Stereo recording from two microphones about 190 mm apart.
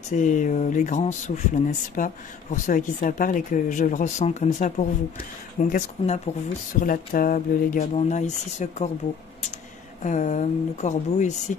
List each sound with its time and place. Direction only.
0.1 s speech: 40° left (ahead or behind)
10.0 s speech: 40° left (ahead or behind)